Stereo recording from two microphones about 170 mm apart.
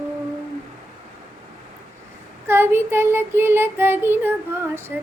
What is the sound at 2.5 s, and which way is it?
Child singing, 15° right (ahead or behind).